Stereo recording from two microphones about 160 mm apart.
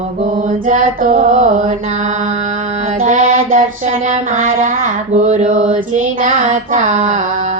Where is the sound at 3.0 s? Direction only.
50° right (ahead or behind).